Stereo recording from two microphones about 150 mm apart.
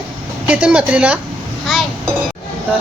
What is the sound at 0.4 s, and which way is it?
Speech, 10° right (ahead or behind).